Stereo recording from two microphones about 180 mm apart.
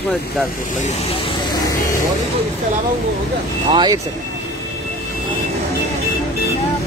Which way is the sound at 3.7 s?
25° right (ahead or behind).